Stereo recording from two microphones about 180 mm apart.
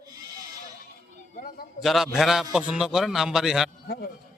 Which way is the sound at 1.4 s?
45° left (ahead or behind).